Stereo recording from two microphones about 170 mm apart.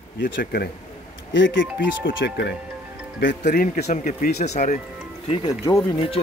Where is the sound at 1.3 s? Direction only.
90° left.